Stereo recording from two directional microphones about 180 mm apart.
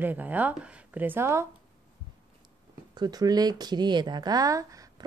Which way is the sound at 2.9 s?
20° right (ahead or behind).